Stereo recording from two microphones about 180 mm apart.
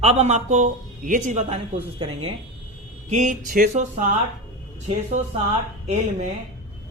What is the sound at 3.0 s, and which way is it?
Music, 40° right (ahead or behind).